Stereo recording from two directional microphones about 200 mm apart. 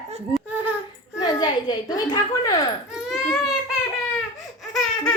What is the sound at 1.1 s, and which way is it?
A child's voice, 20° left (ahead or behind).